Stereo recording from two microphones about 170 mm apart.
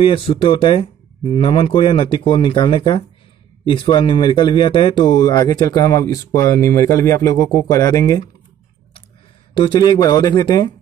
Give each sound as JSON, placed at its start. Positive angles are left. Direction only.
{"t": 0.0, "sound": "speech", "side_deg": 35}
{"t": 9.5, "sound": "speech", "side_deg": 25}